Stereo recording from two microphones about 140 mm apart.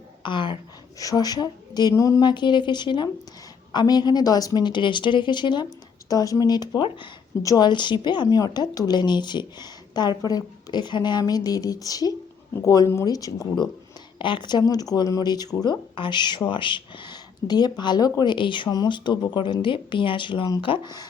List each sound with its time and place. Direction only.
0.2 s a woman's voice: 35° left (ahead or behind)
14.2 s a woman's voice: 35° left (ahead or behind)